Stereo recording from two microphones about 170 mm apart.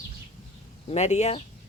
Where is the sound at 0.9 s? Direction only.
40° left (ahead or behind).